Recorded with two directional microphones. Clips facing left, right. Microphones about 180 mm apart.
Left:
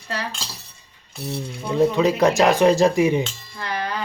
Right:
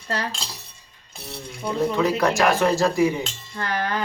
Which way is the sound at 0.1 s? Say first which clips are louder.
Right 1 dB; 40° right (ahead or behind).